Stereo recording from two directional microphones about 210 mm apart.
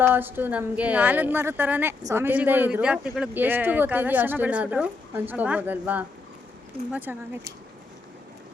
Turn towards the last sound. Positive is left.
turn(degrees=-10)  # may be behind; listen again after turning